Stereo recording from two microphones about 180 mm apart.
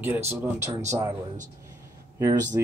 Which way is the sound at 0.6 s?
40° right (ahead or behind).